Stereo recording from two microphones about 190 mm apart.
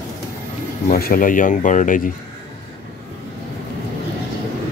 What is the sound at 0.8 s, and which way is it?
Speech, 50° left (ahead or behind).